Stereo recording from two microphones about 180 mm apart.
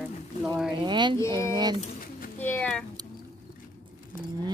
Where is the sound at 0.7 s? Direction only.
25° right (ahead or behind).